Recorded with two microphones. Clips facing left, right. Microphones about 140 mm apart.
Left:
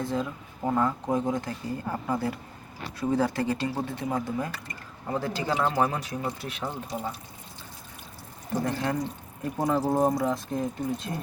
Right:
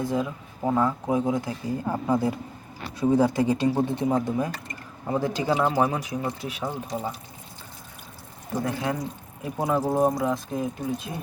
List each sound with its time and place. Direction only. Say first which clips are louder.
0.0 s speech: right 3 dB; 10° right (ahead or behind)
8.6 s speech: right 1 dB; 5° right (ahead or behind)